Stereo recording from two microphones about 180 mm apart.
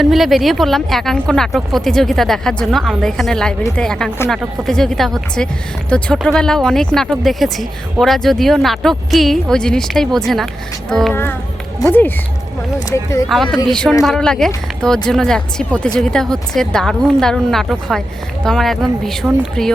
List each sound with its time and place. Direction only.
0.0 s speech: centre (ahead or behind)
11.1 s speech: 10° left (ahead or behind)
13.2 s speech: centre (ahead or behind)